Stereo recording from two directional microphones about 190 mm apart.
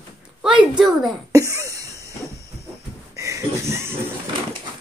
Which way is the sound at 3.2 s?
15° right (ahead or behind).